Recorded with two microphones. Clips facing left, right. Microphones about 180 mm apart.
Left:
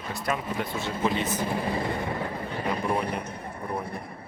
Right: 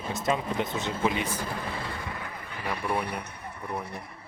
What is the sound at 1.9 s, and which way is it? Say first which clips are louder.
Vehicle: left 7 dB; 25° left (ahead or behind).